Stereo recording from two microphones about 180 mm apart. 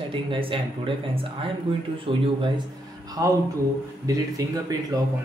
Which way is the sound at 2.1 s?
30° right (ahead or behind).